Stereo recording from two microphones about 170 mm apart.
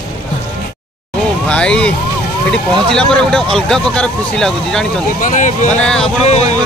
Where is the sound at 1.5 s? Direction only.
5° left (ahead or behind).